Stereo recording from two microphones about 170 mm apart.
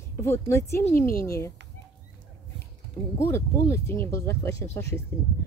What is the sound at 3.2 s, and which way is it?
Speech, 15° left (ahead or behind).